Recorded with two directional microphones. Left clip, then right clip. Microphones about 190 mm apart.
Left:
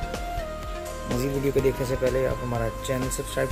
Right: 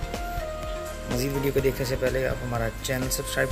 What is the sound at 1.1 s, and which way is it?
Speech, 15° left (ahead or behind).